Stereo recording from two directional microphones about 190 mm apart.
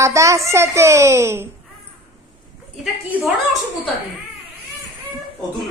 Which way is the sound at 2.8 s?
5° right (ahead or behind).